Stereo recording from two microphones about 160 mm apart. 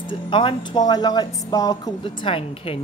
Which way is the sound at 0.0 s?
30° left (ahead or behind).